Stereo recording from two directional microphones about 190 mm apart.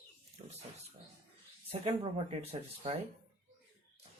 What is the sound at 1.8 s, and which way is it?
Speech, 30° right (ahead or behind).